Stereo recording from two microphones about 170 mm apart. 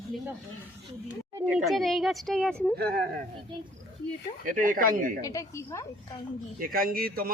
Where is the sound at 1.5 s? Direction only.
Centre (ahead or behind).